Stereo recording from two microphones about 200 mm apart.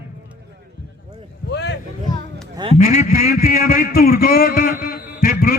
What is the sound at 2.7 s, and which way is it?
A man's voice, 45° left (ahead or behind).